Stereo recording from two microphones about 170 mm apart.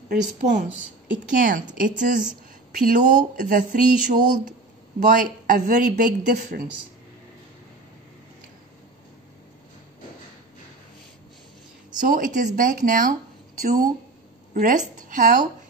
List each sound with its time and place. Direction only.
0.4 s speech: 45° right (ahead or behind)
12.0 s speech: 50° right (ahead or behind)